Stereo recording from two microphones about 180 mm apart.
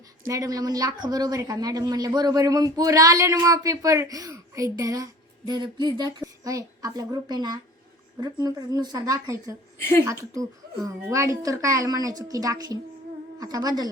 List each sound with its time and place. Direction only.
0.3 s speech: 20° right (ahead or behind)